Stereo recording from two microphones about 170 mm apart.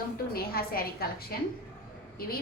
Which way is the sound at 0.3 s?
60° left (ahead or behind).